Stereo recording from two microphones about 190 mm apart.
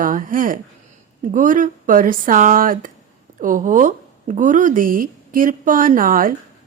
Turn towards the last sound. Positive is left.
turn(degrees=-45)  # may be behind; listen again after turning